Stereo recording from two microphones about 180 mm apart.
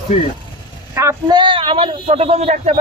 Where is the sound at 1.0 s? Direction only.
20° right (ahead or behind); by 2.8 s 35° right (ahead or behind).